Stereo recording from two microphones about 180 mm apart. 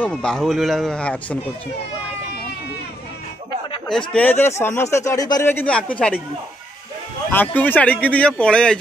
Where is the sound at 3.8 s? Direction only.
5° left (ahead or behind).